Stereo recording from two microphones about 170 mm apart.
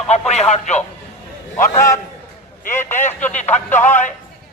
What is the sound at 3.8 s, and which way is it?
Speech, 45° left (ahead or behind).